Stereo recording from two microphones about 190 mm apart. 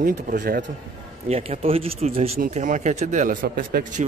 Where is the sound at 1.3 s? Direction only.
35° right (ahead or behind).